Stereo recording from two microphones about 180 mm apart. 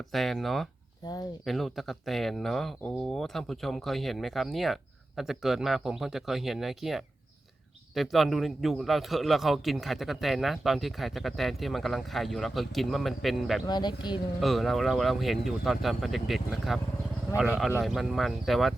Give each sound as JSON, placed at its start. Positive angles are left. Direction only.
{"t": 0.1, "sound": "a man's voice", "side_deg": 0}
{"t": 13.7, "sound": "speech", "side_deg": 25}
{"t": 14.4, "sound": "a man's voice", "side_deg": 0}